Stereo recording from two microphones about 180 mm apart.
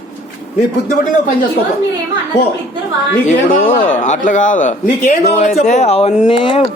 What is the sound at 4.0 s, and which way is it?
A man's voice, 45° left (ahead or behind).